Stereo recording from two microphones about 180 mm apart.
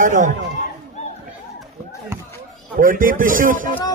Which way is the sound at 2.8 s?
50° right (ahead or behind).